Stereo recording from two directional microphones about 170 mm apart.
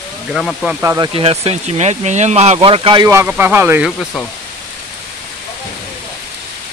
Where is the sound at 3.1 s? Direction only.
15° right (ahead or behind).